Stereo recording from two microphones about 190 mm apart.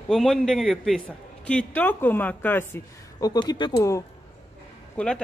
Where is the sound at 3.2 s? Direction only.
20° left (ahead or behind).